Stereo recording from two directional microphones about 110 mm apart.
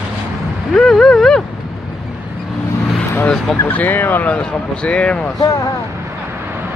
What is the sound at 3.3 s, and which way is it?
Speech, 15° left (ahead or behind).